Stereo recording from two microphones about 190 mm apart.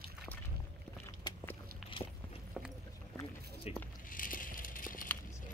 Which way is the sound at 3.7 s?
35° left (ahead or behind).